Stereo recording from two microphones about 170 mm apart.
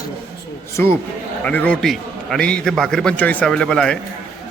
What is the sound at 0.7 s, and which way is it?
A man's voice, 15° left (ahead or behind).